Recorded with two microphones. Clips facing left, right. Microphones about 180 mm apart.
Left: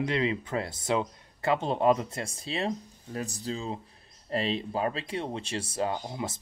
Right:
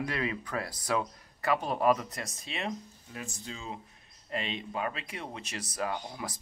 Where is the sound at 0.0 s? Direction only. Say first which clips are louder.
Left 5 dB; 25° left (ahead or behind).